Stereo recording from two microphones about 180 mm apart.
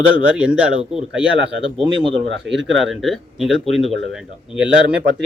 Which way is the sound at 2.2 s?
80° right.